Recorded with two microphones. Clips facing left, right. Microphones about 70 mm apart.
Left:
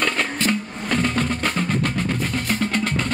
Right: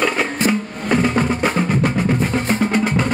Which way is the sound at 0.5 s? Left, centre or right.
Centre.